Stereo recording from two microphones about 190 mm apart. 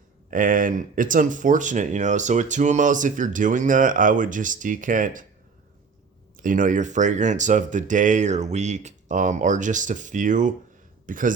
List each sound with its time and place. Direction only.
0.3 s speech: 45° right (ahead or behind)
6.3 s a man's voice: 45° right (ahead or behind)